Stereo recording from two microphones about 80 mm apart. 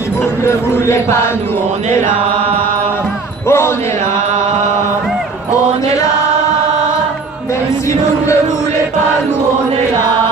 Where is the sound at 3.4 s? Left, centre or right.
Left.